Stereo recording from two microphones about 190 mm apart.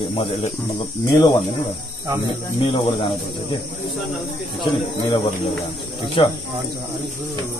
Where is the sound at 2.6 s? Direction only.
25° left (ahead or behind).